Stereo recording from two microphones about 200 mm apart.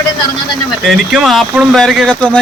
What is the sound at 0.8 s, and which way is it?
Speech, centre (ahead or behind).